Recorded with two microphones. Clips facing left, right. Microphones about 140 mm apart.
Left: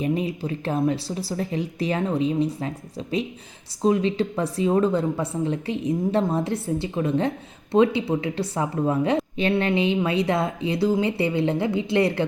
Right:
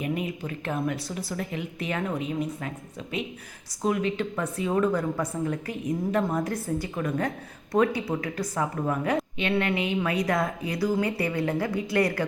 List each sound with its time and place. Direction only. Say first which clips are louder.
0.0 s speech: left 5 dB; 30° left (ahead or behind)